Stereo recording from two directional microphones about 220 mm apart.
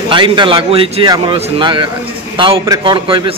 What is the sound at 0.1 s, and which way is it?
A man's voice, 20° right (ahead or behind).